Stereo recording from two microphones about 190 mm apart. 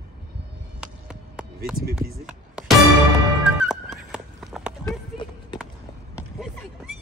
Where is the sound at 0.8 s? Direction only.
5° right (ahead or behind).